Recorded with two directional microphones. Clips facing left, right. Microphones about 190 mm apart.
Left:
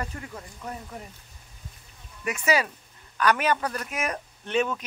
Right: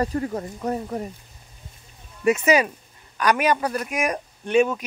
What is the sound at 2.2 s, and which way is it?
A man's voice, 25° right (ahead or behind).